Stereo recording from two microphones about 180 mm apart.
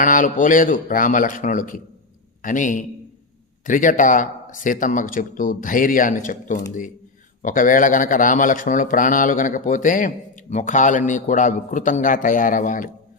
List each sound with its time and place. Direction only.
0.0 s a man's voice: 45° left (ahead or behind)